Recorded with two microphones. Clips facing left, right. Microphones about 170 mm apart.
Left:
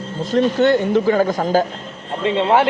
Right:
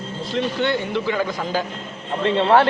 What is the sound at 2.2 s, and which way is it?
Speech, 15° left (ahead or behind).